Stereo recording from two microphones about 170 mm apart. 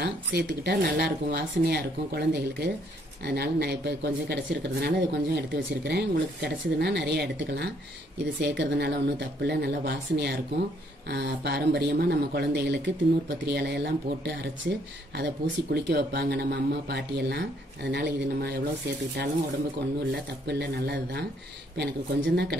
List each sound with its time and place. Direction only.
0.0 s speech: 70° right (ahead or behind)
13.5 s speech: 75° right (ahead or behind)
20.1 s speech: 75° right (ahead or behind)
21.7 s a woman's voice: 85° right